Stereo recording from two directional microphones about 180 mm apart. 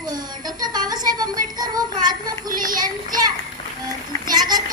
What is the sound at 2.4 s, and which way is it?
Speech, 50° right (ahead or behind).